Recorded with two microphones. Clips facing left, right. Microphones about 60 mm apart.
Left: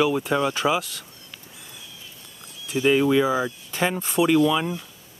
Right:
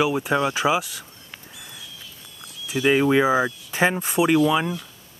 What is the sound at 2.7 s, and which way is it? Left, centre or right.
Speech, right.